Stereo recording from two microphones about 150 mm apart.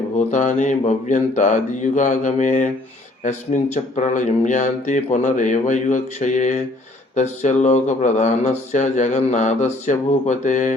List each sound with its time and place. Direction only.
0.2 s speech: 55° left (ahead or behind)